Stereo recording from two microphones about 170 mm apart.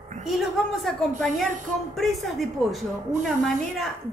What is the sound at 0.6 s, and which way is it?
Speech, 5° right (ahead or behind).